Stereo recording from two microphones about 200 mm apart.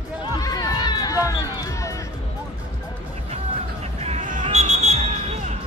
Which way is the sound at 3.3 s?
30° right (ahead or behind).